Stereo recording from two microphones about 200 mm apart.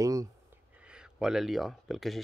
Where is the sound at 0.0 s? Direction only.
15° right (ahead or behind).